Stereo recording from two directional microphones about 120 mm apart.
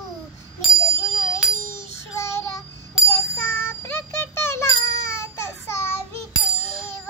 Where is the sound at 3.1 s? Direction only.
20° left (ahead or behind).